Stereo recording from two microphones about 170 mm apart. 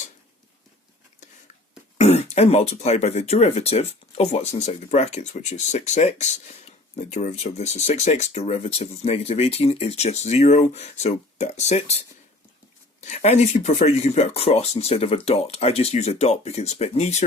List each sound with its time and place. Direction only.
2.0 s speech: 40° left (ahead or behind)
13.0 s speech: 45° left (ahead or behind)